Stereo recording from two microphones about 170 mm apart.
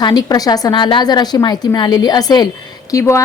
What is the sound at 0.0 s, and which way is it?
A woman's voice, 25° left (ahead or behind).